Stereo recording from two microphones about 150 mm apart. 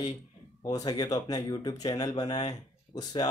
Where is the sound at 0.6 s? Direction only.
25° left (ahead or behind).